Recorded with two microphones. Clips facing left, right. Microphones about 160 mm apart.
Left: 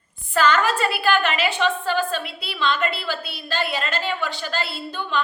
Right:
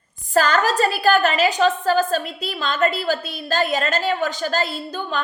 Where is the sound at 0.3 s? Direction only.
40° right (ahead or behind).